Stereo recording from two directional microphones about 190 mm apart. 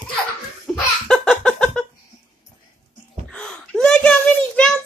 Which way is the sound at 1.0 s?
5° left (ahead or behind).